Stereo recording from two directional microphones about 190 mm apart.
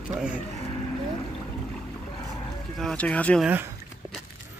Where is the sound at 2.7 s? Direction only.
5° left (ahead or behind).